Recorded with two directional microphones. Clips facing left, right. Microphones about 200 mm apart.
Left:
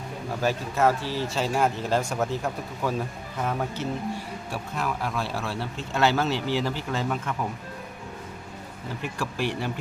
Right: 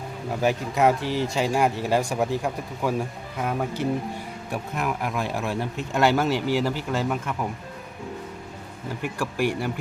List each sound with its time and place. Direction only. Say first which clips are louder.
0.4 s speech: right 2 dB; 15° right (ahead or behind)
9.1 s speech: right 4 dB; 10° right (ahead or behind)